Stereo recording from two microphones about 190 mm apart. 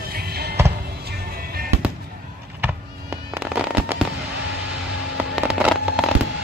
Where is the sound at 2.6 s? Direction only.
10° right (ahead or behind).